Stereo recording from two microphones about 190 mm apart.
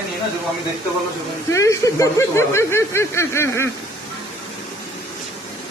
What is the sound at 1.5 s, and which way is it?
Speech, 15° left (ahead or behind).